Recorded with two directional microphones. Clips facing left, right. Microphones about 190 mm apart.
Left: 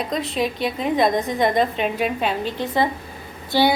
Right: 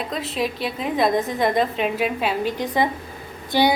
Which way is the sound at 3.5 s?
15° right (ahead or behind).